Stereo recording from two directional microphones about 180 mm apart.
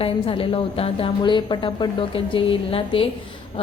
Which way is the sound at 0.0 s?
30° left (ahead or behind).